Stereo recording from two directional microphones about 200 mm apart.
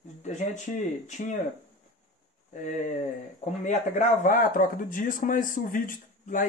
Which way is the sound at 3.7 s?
40° left (ahead or behind).